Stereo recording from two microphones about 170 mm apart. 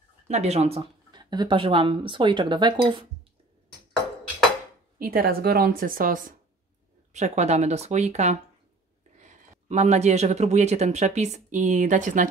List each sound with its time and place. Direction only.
0.3 s speech: 40° right (ahead or behind)
1.1 s speech: 25° right (ahead or behind)
4.9 s a woman's voice: 60° right (ahead or behind)
7.1 s speech: 45° right (ahead or behind)